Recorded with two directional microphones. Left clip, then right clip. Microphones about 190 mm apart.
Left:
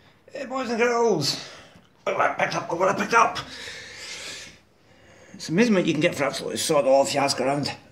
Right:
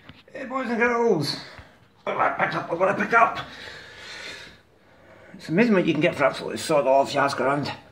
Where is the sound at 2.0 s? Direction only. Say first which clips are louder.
Even; 20° left (ahead or behind).